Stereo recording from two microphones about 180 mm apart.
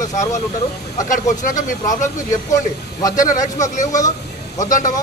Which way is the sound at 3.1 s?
45° left (ahead or behind).